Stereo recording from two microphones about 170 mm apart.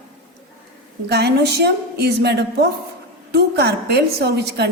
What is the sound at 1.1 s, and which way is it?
A woman's voice, 75° right (ahead or behind).